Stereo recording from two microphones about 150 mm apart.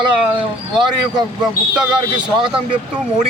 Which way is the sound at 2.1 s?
35° right (ahead or behind).